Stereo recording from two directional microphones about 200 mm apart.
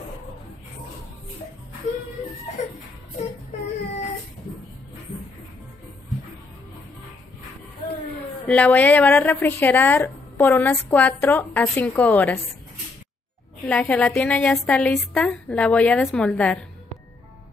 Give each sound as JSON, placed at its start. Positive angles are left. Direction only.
{"t": 8.5, "sound": "a woman's voice", "side_deg": 5}
{"t": 13.7, "sound": "a woman's voice", "side_deg": 5}